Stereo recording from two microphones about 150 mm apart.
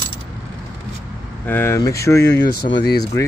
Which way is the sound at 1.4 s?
15° left (ahead or behind).